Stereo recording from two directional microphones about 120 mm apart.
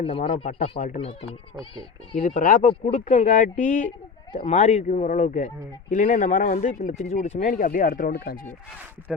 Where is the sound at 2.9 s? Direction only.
80° left.